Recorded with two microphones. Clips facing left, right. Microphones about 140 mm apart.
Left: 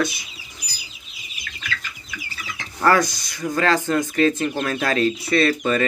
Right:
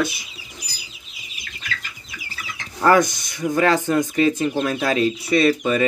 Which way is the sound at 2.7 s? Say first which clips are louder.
Right 2 dB; 20° right (ahead or behind).